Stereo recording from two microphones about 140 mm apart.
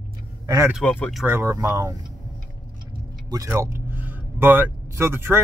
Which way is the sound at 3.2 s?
25° right (ahead or behind).